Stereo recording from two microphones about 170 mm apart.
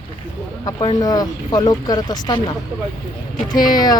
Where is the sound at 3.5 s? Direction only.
25° left (ahead or behind).